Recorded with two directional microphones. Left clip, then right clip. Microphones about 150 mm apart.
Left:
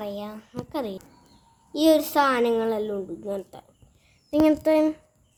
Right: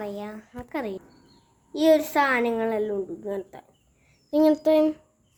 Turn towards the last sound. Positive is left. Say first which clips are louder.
# even
turn(degrees=5)  # may be behind; listen again after turning